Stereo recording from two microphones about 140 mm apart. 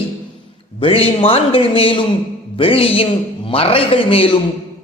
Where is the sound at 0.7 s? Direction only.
40° left (ahead or behind).